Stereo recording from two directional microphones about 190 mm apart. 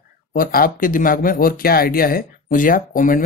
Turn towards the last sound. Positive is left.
turn(degrees=45)  # may be behind; listen again after turning